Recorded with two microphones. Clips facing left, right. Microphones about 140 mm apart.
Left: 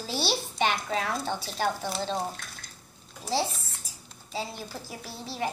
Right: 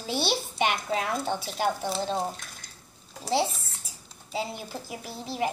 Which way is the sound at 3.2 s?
20° right (ahead or behind).